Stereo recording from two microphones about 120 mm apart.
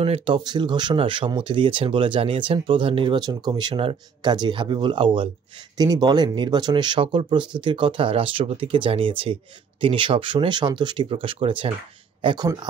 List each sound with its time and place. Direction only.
0.0 s speech: 55° right (ahead or behind)
0.4 s speech: 40° right (ahead or behind)
3.2 s speech: 35° right (ahead or behind)
5.8 s speech: 35° right (ahead or behind)